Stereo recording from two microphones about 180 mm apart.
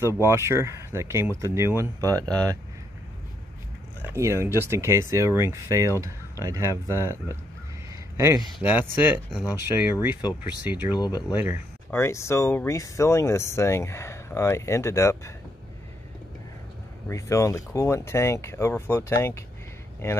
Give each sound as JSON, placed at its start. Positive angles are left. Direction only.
{"t": 0.2, "sound": "speech", "side_deg": -15}
{"t": 4.0, "sound": "speech", "side_deg": -15}
{"t": 7.9, "sound": "a sound", "side_deg": -15}
{"t": 8.5, "sound": "speech", "side_deg": -10}
{"t": 10.7, "sound": "speech", "side_deg": -10}
{"t": 11.0, "sound": "speech", "side_deg": 20}
{"t": 11.3, "sound": "speech", "side_deg": -10}
{"t": 11.9, "sound": "speech", "side_deg": 15}
{"t": 17.1, "sound": "speech", "side_deg": 15}